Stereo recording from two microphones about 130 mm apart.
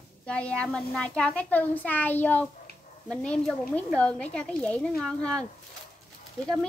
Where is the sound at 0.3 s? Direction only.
10° left (ahead or behind).